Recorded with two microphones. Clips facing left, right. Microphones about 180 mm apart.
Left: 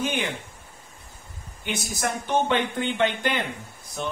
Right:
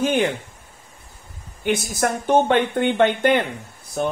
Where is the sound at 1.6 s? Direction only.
55° right (ahead or behind).